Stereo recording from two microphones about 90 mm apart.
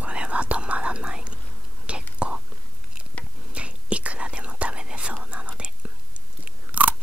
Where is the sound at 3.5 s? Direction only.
15° right (ahead or behind).